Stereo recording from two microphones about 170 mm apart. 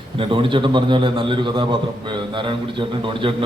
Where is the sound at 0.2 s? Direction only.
30° right (ahead or behind).